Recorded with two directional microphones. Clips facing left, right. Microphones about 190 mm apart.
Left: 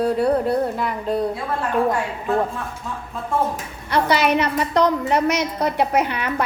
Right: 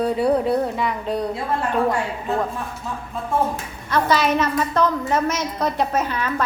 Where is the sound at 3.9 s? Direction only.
15° left (ahead or behind).